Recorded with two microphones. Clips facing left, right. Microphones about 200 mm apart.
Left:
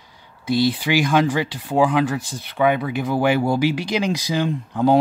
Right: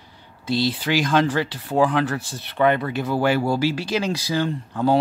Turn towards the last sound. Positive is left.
turn(degrees=15)  # may be behind; listen again after turning